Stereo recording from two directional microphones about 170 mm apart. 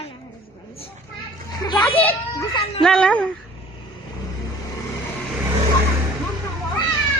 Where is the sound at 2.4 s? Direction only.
30° left (ahead or behind).